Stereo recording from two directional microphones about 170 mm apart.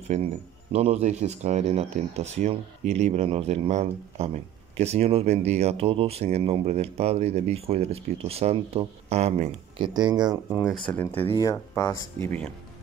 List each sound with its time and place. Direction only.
0.1 s speech: 45° right (ahead or behind)
9.8 s speech: 25° right (ahead or behind)
10.5 s speech: 5° right (ahead or behind)
10.9 s speech: 10° left (ahead or behind)